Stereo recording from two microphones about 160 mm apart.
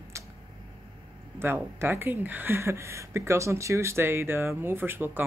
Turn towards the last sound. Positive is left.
turn(degrees=-15)  # may be behind; listen again after turning